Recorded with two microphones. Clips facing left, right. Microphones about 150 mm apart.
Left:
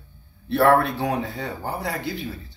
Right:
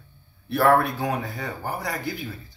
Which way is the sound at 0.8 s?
30° left (ahead or behind).